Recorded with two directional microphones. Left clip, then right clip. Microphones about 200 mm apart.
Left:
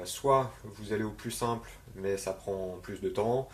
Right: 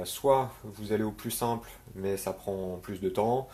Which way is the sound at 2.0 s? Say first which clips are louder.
Even; 40° right (ahead or behind).